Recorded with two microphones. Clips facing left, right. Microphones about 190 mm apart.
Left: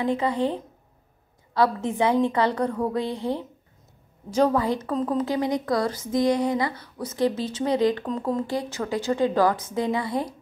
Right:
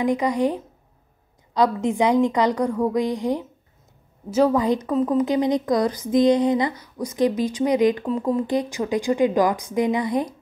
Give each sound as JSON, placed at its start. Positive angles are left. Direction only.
{"t": 0.0, "sound": "speech", "side_deg": -15}